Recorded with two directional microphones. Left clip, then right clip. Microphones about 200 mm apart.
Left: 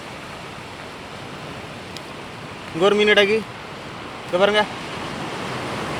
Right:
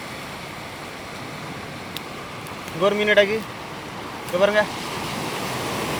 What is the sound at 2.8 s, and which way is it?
Speech, 55° left (ahead or behind).